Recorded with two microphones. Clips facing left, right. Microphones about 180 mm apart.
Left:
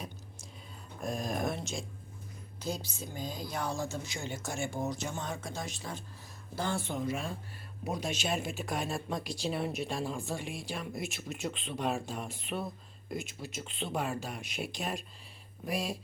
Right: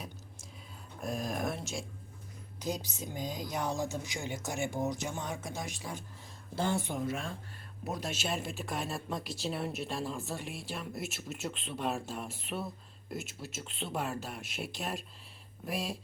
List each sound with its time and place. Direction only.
1.0 s speech: 5° right (ahead or behind)
2.6 s speech: 15° right (ahead or behind)
7.0 s speech: centre (ahead or behind)